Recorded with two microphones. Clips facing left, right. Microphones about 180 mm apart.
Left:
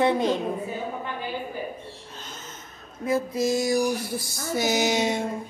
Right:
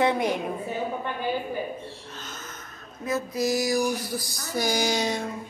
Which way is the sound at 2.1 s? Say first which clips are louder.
Right 1 dB; 30° left (ahead or behind).